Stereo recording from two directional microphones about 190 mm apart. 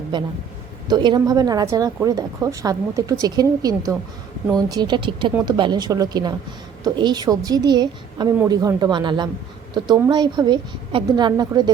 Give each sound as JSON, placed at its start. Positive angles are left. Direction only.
{"t": 0.1, "sound": "a woman's voice", "side_deg": -25}